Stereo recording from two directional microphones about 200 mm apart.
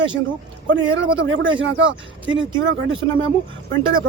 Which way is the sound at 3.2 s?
75° right (ahead or behind).